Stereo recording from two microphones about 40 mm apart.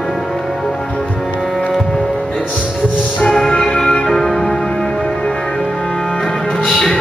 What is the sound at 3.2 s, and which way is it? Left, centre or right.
Music, centre.